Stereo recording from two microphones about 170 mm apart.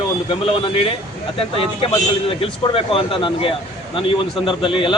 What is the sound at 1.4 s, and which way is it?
A man's voice, 30° left (ahead or behind).